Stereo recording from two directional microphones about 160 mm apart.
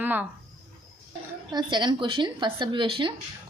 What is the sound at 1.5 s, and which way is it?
A woman's voice, 25° right (ahead or behind).